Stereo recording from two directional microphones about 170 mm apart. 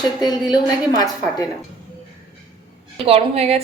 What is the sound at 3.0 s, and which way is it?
Speech, 35° right (ahead or behind).